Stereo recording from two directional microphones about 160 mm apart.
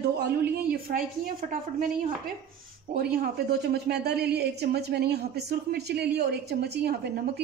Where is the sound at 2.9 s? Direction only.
75° right (ahead or behind); by 7.2 s 90° right.